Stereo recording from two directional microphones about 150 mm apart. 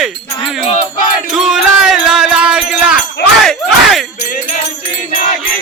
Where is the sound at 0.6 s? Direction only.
55° left (ahead or behind).